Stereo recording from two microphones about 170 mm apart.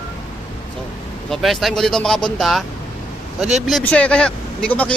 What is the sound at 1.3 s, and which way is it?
Speech, centre (ahead or behind).